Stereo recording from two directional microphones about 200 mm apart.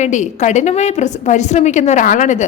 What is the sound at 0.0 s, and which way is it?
A woman's voice, 35° left (ahead or behind).